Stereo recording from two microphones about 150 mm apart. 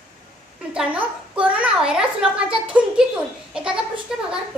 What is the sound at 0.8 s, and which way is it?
A child's voice, 10° right (ahead or behind).